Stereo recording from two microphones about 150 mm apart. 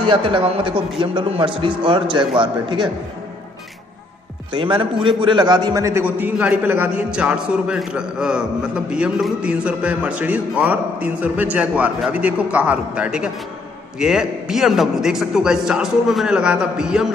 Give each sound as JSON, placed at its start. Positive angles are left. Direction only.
{"t": 0.0, "sound": "a man's voice", "side_deg": -35}
{"t": 4.5, "sound": "a man's voice", "side_deg": -30}